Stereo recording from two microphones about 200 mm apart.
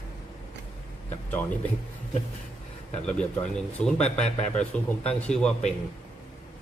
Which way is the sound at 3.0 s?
5° left (ahead or behind).